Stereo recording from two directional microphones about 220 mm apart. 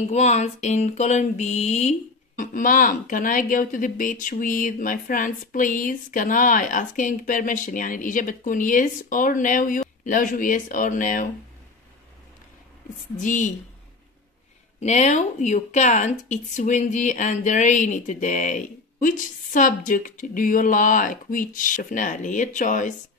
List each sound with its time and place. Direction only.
0.0 s mantra: 30° left (ahead or behind)
13.2 s mantra: 35° left (ahead or behind)
14.8 s mantra: 30° left (ahead or behind)